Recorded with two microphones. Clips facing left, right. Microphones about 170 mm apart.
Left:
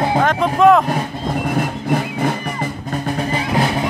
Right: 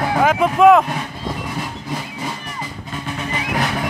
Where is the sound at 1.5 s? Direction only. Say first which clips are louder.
Left 8 dB; 55° left (ahead or behind).